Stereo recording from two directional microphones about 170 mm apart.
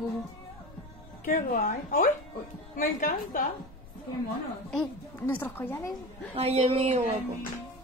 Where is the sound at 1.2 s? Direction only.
50° left (ahead or behind).